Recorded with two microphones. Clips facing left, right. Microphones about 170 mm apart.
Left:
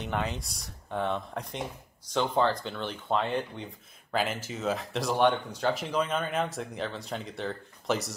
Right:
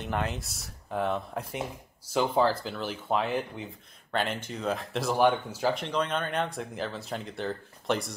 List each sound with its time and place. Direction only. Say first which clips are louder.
0.0 s speech: right 1 dB; centre (ahead or behind)